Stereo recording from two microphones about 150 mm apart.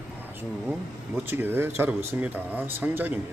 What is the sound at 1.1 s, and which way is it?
Speech, 15° right (ahead or behind).